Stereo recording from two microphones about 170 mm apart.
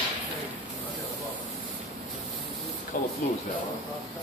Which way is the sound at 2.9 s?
50° left (ahead or behind).